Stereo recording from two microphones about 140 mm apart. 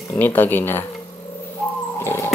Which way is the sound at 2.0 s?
20° left (ahead or behind).